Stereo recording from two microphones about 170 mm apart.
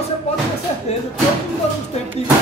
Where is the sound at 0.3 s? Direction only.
40° left (ahead or behind).